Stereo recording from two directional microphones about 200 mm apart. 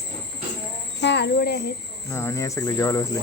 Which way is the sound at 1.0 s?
60° left (ahead or behind).